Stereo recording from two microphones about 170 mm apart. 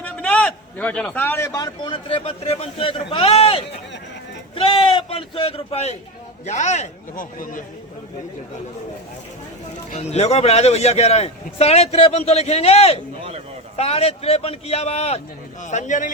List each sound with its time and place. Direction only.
0.0 s a man's voice: 10° left (ahead or behind); by 7.6 s 55° left (ahead or behind)
9.9 s speech: 40° left (ahead or behind)